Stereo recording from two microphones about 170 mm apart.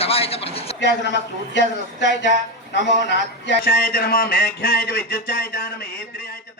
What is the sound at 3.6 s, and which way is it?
Speech, 60° left (ahead or behind).